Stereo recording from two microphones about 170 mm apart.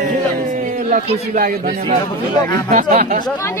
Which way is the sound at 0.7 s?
50° right (ahead or behind).